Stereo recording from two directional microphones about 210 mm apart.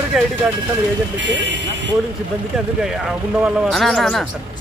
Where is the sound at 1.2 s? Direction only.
55° right (ahead or behind).